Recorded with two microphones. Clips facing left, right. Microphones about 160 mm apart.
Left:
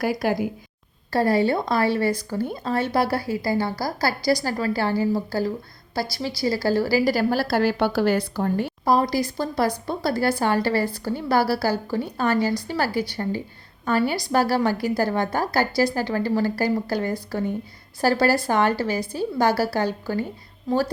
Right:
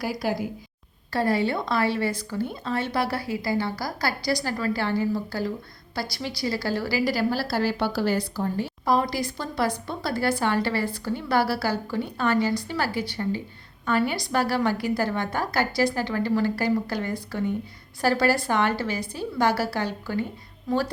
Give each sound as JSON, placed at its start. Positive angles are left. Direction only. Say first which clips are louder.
{"t": 0.0, "sound": "a woman's voice", "louder": "left 4 dB", "side_deg": 55}
{"t": 1.1, "sound": "a woman's voice", "louder": "left 4 dB", "side_deg": 40}
{"t": 8.8, "sound": "a woman's voice", "louder": "left 3 dB", "side_deg": 35}